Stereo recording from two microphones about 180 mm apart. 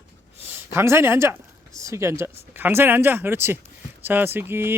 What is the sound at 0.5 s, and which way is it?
Speech, 15° right (ahead or behind).